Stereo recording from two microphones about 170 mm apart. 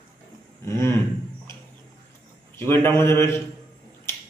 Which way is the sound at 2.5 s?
15° left (ahead or behind).